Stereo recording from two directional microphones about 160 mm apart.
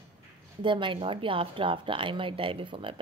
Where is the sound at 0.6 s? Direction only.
30° right (ahead or behind).